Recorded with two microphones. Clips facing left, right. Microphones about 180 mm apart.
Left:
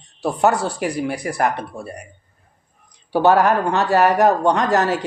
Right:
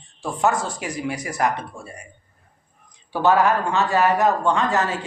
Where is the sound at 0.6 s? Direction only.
65° left (ahead or behind).